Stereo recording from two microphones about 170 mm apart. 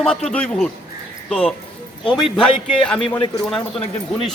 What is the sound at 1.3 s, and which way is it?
Speech, 5° left (ahead or behind).